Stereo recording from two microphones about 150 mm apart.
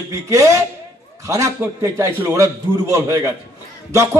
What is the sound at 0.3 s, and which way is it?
A man's voice, 20° right (ahead or behind).